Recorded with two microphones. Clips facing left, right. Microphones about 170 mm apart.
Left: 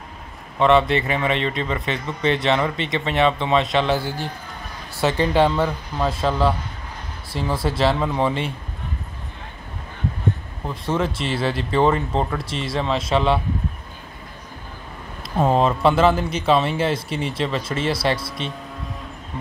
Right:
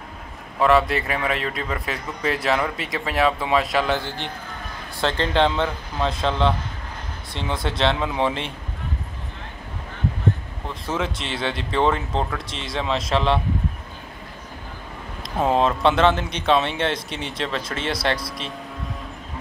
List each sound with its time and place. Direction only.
0.6 s a man's voice: centre (ahead or behind)
5.0 s a man's voice: 10° left (ahead or behind)
10.7 s a man's voice: centre (ahead or behind)
15.5 s a man's voice: 5° left (ahead or behind)